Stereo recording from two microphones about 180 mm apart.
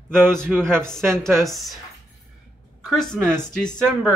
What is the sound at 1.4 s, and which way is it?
Speech, centre (ahead or behind).